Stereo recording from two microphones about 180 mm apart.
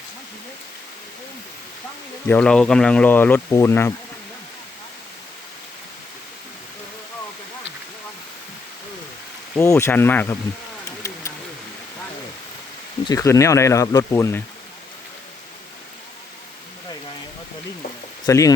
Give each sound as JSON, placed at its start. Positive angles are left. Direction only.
{"t": 2.2, "sound": "speech", "side_deg": 10}
{"t": 9.6, "sound": "speech", "side_deg": 15}
{"t": 13.1, "sound": "speech", "side_deg": 15}
{"t": 18.3, "sound": "speech", "side_deg": 20}